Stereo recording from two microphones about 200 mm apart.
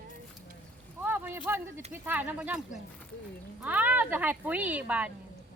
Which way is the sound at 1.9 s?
10° right (ahead or behind).